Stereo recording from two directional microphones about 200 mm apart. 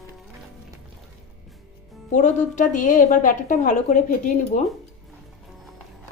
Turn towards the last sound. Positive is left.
turn(degrees=40)  # may be behind; listen again after turning